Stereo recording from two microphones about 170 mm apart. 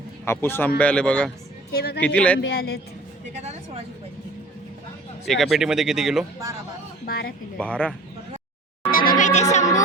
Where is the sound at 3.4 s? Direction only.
40° right (ahead or behind).